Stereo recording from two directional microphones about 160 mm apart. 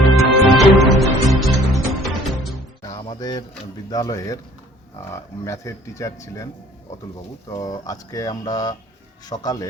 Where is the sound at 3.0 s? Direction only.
30° left (ahead or behind).